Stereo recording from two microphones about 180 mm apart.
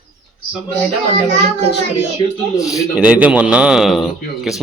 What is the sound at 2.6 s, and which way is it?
Speech, 20° left (ahead or behind).